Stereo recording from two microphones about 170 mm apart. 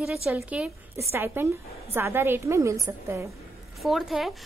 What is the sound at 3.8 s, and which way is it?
Speech, centre (ahead or behind).